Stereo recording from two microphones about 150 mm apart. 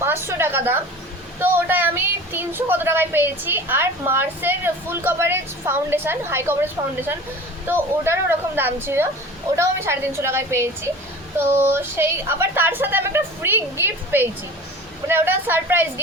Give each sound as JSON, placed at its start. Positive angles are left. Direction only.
{"t": 0.0, "sound": "a woman's voice", "side_deg": -15}